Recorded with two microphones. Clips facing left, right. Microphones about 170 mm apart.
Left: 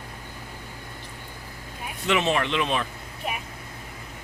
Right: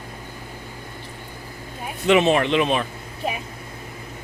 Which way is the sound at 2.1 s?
20° right (ahead or behind).